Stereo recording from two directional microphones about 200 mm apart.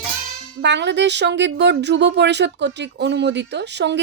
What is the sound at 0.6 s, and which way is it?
Speech, 60° right (ahead or behind).